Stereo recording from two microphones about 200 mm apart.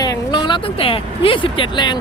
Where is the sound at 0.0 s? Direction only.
20° left (ahead or behind).